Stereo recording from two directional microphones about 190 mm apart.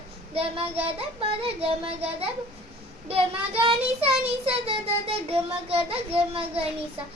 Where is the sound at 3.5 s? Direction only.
30° right (ahead or behind).